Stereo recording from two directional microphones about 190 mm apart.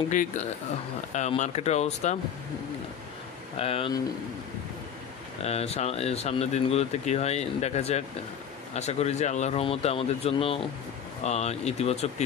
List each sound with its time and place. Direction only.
0.1 s speech: 45° left (ahead or behind)
3.5 s speech: 30° left (ahead or behind)
5.4 s speech: 35° left (ahead or behind)